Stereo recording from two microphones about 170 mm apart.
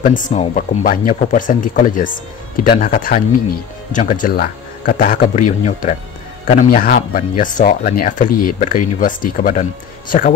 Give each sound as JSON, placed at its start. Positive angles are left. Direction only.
{"t": 0.0, "sound": "a man's voice", "side_deg": 50}